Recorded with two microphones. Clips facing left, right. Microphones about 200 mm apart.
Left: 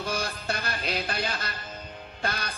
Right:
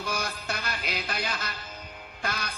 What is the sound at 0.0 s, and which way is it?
Music, 30° left (ahead or behind).